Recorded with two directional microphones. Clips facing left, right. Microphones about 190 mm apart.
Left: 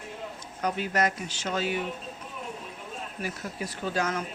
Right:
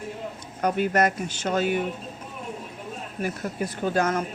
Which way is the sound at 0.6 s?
55° right (ahead or behind).